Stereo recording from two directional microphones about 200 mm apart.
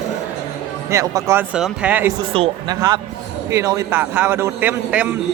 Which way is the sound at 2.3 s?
25° right (ahead or behind).